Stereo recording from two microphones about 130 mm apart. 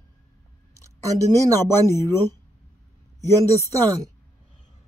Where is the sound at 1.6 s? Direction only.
20° left (ahead or behind).